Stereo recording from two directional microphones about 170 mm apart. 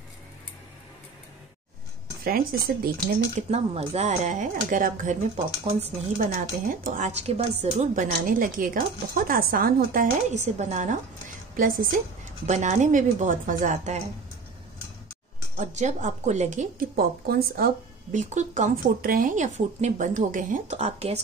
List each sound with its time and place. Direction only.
2.2 s speech: 60° right (ahead or behind)
3.3 s speech: 40° right (ahead or behind)
5.6 s speech: 40° right (ahead or behind)
6.7 s a woman's voice: 50° right (ahead or behind)
11.5 s a woman's voice: 55° right (ahead or behind)
12.4 s a woman's voice: 45° right (ahead or behind)
15.5 s a woman's voice: 45° right (ahead or behind)
16.9 s speech: 60° right (ahead or behind)
18.1 s a woman's voice: 45° right (ahead or behind)